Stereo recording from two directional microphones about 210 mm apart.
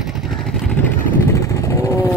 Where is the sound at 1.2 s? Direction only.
15° left (ahead or behind).